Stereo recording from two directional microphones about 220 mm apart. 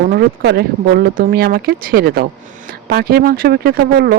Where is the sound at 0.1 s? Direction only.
45° right (ahead or behind).